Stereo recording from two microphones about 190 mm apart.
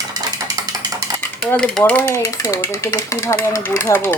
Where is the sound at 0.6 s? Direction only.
20° right (ahead or behind).